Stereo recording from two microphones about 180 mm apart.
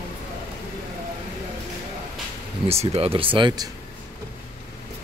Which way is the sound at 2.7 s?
35° right (ahead or behind).